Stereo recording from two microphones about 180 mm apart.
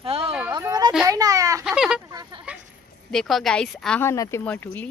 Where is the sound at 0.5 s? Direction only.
20° right (ahead or behind).